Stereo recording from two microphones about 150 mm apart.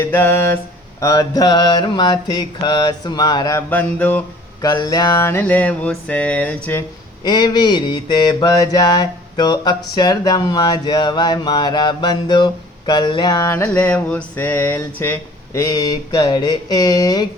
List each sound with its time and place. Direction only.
0.0 s mantra: 15° left (ahead or behind)
3.7 s mantra: 10° left (ahead or behind)
4.6 s mantra: 25° left (ahead or behind)
7.3 s mantra: 30° left (ahead or behind)